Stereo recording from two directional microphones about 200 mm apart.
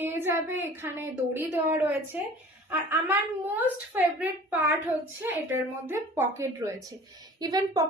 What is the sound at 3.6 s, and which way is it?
A woman's voice, 10° right (ahead or behind).